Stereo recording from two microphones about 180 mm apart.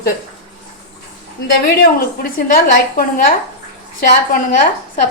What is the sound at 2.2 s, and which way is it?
A woman's voice, 50° left (ahead or behind).